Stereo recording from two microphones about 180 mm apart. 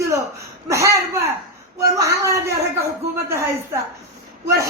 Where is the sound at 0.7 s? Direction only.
15° right (ahead or behind).